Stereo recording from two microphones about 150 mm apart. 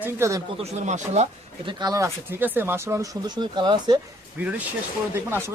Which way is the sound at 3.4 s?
30° right (ahead or behind).